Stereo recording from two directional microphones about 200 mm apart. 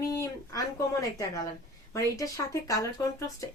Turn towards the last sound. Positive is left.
turn(degrees=15)  # may be behind; listen again after turning